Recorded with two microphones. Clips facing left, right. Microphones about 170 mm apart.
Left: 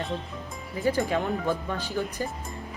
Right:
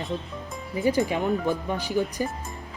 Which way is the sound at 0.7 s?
15° right (ahead or behind).